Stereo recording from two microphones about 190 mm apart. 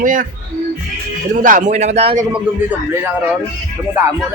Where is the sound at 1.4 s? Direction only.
40° right (ahead or behind).